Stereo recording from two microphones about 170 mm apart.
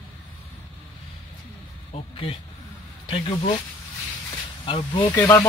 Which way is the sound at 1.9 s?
35° left (ahead or behind).